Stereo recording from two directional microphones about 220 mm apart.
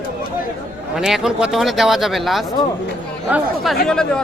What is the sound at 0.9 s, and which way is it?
Speech, centre (ahead or behind).